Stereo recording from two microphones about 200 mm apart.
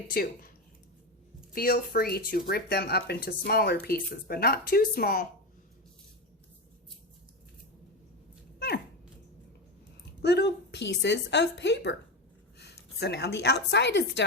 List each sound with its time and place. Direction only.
0.1 s speech: 50° left (ahead or behind)
1.5 s speech: 50° left (ahead or behind)
8.5 s dog: 55° left (ahead or behind)
10.2 s a woman's voice: 55° left (ahead or behind)